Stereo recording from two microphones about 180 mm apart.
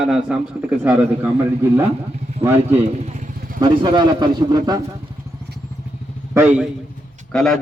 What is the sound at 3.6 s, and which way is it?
Speech, 25° right (ahead or behind).